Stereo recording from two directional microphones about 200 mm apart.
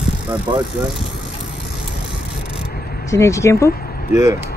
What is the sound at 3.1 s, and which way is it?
Speech, 15° left (ahead or behind).